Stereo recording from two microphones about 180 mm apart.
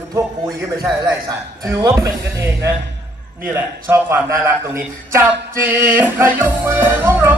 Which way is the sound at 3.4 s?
10° right (ahead or behind).